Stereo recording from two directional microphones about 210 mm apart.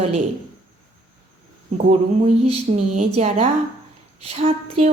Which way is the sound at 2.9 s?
35° right (ahead or behind).